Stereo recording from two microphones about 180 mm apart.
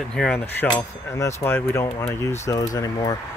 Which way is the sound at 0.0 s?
5° left (ahead or behind).